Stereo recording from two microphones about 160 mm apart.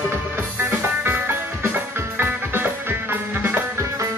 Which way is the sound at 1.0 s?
15° right (ahead or behind).